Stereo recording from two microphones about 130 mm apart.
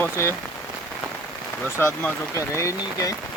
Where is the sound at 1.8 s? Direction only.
20° left (ahead or behind).